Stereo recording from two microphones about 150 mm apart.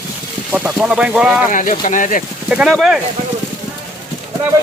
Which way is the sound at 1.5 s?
60° left (ahead or behind).